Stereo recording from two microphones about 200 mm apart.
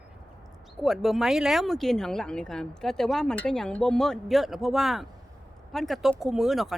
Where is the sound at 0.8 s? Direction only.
Centre (ahead or behind).